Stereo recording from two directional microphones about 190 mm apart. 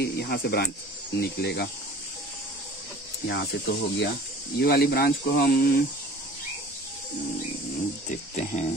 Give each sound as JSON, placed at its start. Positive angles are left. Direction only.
{"t": 0.0, "sound": "speech", "side_deg": 55}
{"t": 3.3, "sound": "speech", "side_deg": 65}
{"t": 8.1, "sound": "speech", "side_deg": 35}